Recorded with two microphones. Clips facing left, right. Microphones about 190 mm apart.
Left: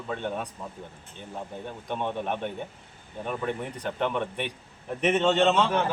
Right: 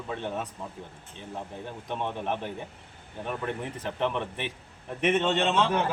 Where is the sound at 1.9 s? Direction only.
Centre (ahead or behind).